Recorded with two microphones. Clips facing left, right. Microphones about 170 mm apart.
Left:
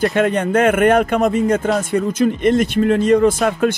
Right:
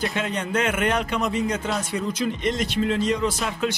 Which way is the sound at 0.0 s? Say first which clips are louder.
Left 10 dB; 55° left (ahead or behind).